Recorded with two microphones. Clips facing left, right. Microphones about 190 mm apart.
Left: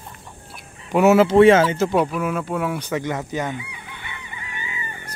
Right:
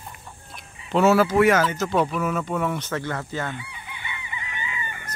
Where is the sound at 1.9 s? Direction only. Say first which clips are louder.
Left 2 dB; 10° left (ahead or behind).